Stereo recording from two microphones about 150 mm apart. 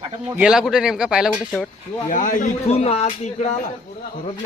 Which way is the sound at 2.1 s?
60° left (ahead or behind).